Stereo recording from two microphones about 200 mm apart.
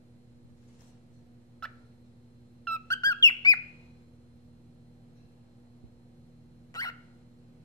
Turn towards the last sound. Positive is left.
turn(degrees=20)  # may be behind; listen again after turning